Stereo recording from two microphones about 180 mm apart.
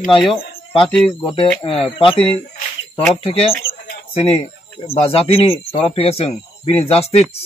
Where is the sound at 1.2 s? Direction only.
30° left (ahead or behind).